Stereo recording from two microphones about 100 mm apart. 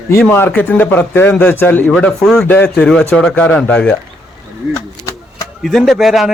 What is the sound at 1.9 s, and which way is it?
Speech, 10° left (ahead or behind).